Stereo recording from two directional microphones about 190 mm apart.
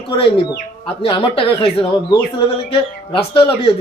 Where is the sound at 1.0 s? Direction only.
25° left (ahead or behind).